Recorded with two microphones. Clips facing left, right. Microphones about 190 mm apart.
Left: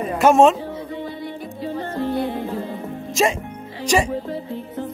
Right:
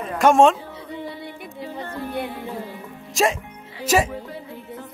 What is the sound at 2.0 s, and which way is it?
Music, 30° left (ahead or behind).